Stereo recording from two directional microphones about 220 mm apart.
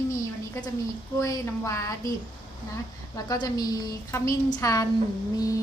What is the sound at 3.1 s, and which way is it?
A woman's voice, 15° left (ahead or behind).